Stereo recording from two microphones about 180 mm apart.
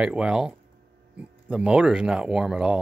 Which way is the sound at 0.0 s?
5° right (ahead or behind).